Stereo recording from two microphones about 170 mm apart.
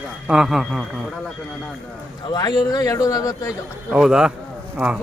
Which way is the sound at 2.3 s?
25° left (ahead or behind).